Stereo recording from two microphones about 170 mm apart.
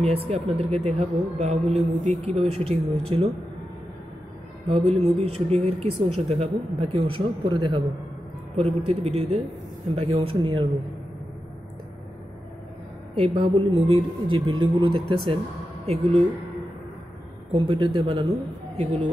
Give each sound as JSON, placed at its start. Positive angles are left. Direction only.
{"t": 0.0, "sound": "a woman's voice", "side_deg": -35}
{"t": 4.6, "sound": "a woman's voice", "side_deg": -35}
{"t": 13.1, "sound": "a woman's voice", "side_deg": -30}
{"t": 17.5, "sound": "speech", "side_deg": -30}